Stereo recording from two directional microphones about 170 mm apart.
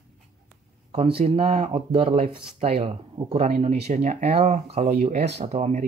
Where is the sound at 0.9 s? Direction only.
35° right (ahead or behind).